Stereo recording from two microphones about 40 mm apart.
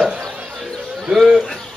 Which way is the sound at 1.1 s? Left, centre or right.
Right.